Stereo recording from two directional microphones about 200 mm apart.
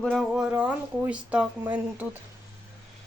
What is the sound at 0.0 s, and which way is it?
Speech, centre (ahead or behind).